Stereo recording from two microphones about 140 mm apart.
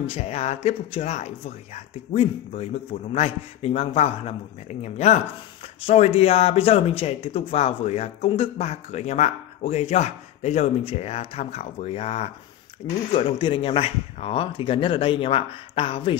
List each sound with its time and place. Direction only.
0.1 s speech: 50° left (ahead or behind)